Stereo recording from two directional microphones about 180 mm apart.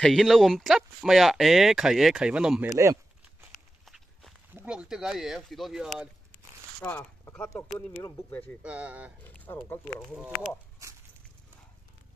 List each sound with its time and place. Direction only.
0.0 s speech: centre (ahead or behind)
2.8 s a sound: 15° right (ahead or behind)
3.8 s walk: centre (ahead or behind)
4.6 s speech: 5° right (ahead or behind)
6.8 s speech: 10° left (ahead or behind)
8.6 s speech: 5° right (ahead or behind)
9.2 s a sound: 10° left (ahead or behind)